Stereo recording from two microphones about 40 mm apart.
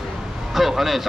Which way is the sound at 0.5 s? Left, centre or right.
Centre.